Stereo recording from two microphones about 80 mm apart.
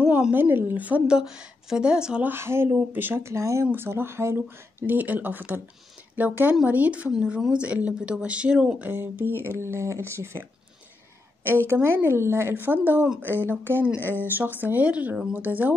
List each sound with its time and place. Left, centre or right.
0.3 s speech: right
2.2 s speech: right; by 8.9 s centre
8.9 s speech: right
11.4 s speech: right
13.9 s speech: left
14.2 s speech: right